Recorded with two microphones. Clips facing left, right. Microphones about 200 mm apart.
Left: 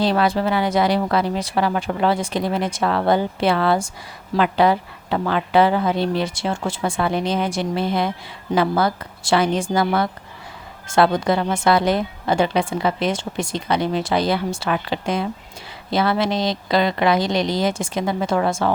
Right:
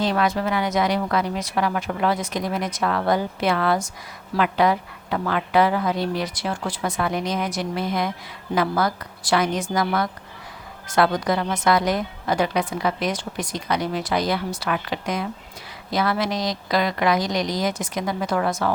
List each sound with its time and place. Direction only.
0.0 s a woman's voice: 30° left (ahead or behind)